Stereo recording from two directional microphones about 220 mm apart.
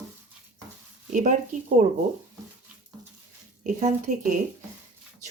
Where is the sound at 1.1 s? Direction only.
35° right (ahead or behind).